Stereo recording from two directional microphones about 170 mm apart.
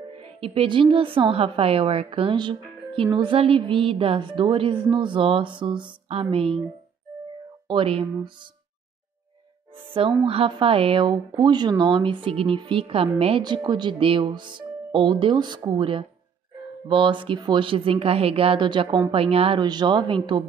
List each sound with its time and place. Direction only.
0.2 s a woman's voice: 35° right (ahead or behind)
7.6 s a woman's voice: 30° right (ahead or behind)
9.9 s a woman's voice: 30° right (ahead or behind)